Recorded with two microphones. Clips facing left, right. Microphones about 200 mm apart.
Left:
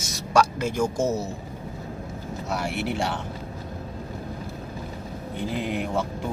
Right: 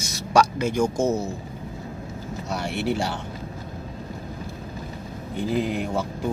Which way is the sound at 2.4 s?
5° left (ahead or behind).